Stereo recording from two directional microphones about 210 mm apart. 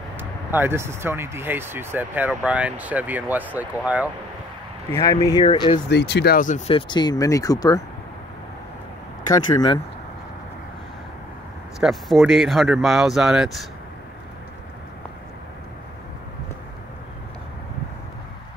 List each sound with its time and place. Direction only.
0.2 s speech: 10° right (ahead or behind)
4.9 s speech: 15° left (ahead or behind)
5.9 s speech: 55° left (ahead or behind); by 6.6 s 40° left (ahead or behind)
6.7 s speech: 20° left (ahead or behind)
9.5 s speech: 20° left (ahead or behind)
11.8 s speech: centre (ahead or behind)